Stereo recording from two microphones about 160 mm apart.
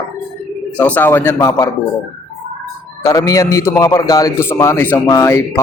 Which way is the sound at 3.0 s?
20° left (ahead or behind).